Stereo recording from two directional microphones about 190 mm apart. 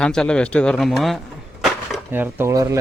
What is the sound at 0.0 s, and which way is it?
Speech, 5° left (ahead or behind).